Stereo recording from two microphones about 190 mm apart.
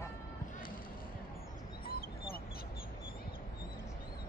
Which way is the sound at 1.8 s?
50° left (ahead or behind).